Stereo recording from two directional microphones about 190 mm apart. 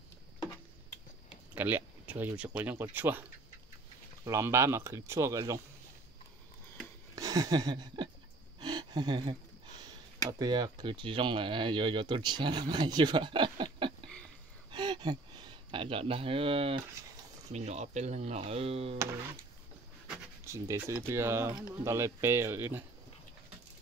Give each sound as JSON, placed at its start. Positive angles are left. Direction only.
{"t": 1.5, "sound": "speech", "side_deg": -10}
{"t": 7.2, "sound": "a sound", "side_deg": -20}
{"t": 10.4, "sound": "speech", "side_deg": -20}
{"t": 14.7, "sound": "a sound", "side_deg": -25}
{"t": 17.5, "sound": "speech", "side_deg": -35}
{"t": 20.4, "sound": "speech", "side_deg": -15}